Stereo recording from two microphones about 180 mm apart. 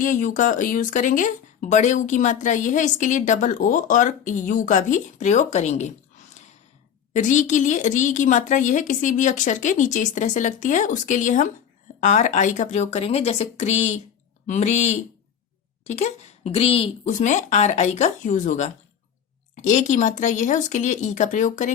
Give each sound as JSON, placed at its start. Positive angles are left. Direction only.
{"t": 0.0, "sound": "speech", "side_deg": 45}
{"t": 7.1, "sound": "speech", "side_deg": 40}